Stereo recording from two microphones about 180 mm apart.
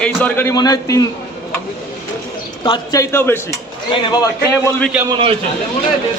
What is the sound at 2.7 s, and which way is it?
Speech, 20° left (ahead or behind).